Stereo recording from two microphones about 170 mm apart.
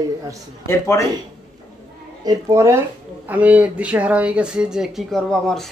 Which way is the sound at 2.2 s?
20° right (ahead or behind).